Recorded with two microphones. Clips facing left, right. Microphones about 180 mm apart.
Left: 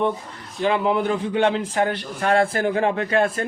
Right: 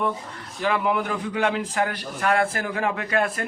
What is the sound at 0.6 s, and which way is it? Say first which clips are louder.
A man's voice: left 3 dB; 25° left (ahead or behind).